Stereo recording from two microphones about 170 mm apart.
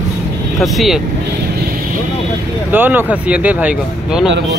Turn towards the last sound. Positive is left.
turn(degrees=-5)  # may be behind; listen again after turning